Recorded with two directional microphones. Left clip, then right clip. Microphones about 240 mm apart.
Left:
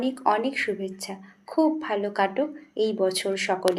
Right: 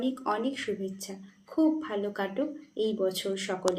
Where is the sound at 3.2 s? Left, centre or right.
Left.